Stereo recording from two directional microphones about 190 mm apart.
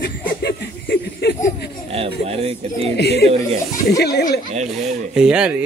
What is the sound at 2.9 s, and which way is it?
A man's voice, 60° left (ahead or behind).